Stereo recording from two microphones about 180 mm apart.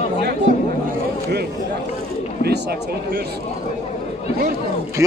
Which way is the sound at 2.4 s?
65° right (ahead or behind).